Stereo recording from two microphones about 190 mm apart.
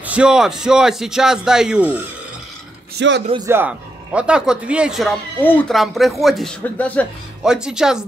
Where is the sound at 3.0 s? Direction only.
70° right (ahead or behind).